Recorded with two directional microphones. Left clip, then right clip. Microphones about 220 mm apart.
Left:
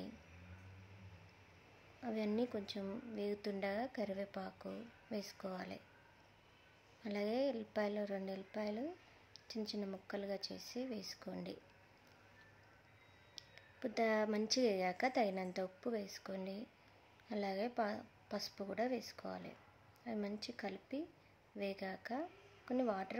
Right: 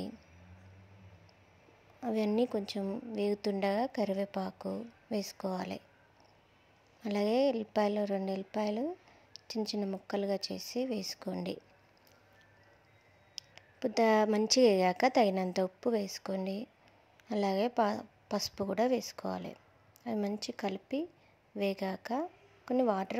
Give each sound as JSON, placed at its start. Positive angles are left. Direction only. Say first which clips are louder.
{"t": 2.0, "sound": "speech", "louder": "right 9 dB", "side_deg": -30}
{"t": 7.0, "sound": "speech", "louder": "right 9 dB", "side_deg": -30}
{"t": 13.3, "sound": "speech", "louder": "right 8 dB", "side_deg": -30}